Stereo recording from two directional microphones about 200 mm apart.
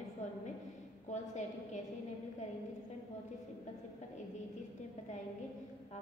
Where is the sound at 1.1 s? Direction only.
35° left (ahead or behind).